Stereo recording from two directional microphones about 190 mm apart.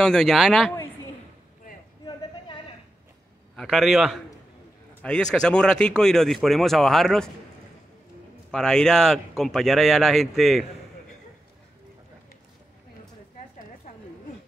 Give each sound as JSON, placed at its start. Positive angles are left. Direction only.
{"t": 0.0, "sound": "speech", "side_deg": 0}
{"t": 2.0, "sound": "a sound", "side_deg": 25}
{"t": 3.5, "sound": "speech", "side_deg": 0}
{"t": 8.5, "sound": "speech", "side_deg": 5}